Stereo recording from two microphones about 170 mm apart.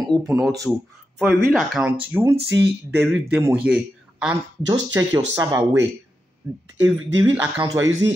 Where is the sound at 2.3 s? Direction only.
80° right.